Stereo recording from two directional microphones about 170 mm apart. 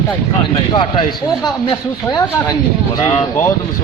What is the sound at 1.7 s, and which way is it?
Speech, 15° left (ahead or behind).